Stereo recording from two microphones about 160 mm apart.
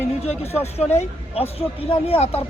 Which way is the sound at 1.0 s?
40° left (ahead or behind).